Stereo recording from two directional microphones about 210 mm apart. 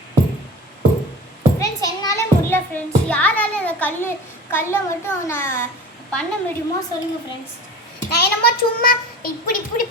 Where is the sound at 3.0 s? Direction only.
5° left (ahead or behind).